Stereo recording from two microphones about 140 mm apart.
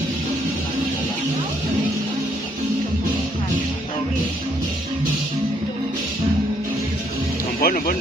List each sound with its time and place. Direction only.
7.6 s speech: 90° left